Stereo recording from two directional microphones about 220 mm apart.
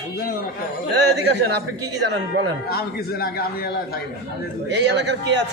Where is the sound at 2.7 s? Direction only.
45° left (ahead or behind).